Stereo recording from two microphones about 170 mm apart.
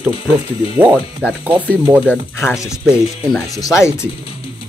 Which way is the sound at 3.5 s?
20° left (ahead or behind).